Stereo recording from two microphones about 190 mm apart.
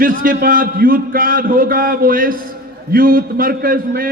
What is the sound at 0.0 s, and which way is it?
A man's voice, 45° right (ahead or behind).